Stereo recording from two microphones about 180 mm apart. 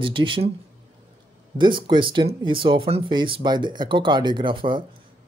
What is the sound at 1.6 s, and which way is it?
Speech, 25° right (ahead or behind).